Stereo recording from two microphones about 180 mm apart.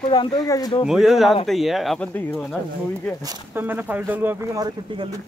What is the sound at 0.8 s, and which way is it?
Speech, centre (ahead or behind).